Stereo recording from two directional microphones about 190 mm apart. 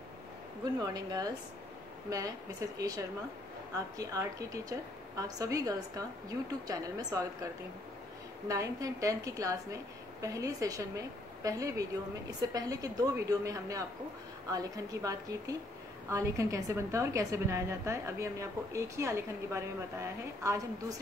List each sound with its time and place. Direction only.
0.7 s a woman's voice: 20° right (ahead or behind)
8.5 s a woman's voice: 15° right (ahead or behind)